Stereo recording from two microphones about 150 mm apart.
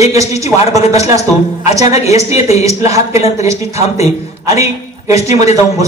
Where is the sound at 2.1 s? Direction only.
45° left (ahead or behind).